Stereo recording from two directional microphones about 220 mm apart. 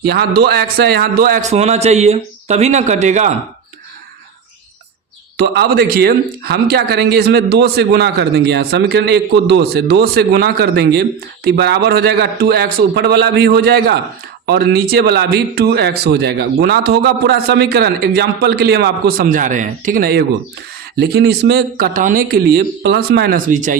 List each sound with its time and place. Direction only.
0.0 s a man's voice: 45° right (ahead or behind)
5.4 s speech: 50° right (ahead or behind)